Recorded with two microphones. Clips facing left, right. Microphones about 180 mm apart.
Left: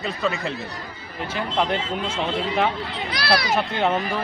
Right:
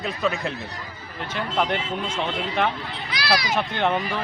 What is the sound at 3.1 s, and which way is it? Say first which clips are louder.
Speech: left 2 dB; 55° left (ahead or behind).